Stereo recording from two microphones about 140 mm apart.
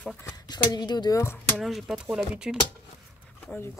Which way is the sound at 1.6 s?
Centre (ahead or behind).